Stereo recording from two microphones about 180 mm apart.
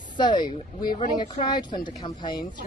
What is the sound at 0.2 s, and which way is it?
A man's voice, 25° left (ahead or behind).